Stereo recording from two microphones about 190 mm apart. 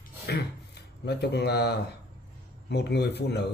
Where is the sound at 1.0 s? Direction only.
60° left (ahead or behind).